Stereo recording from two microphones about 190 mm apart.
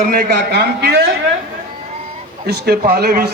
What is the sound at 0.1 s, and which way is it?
Speech, 55° right (ahead or behind).